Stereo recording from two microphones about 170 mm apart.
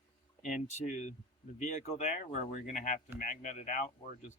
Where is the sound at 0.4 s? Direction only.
45° left (ahead or behind).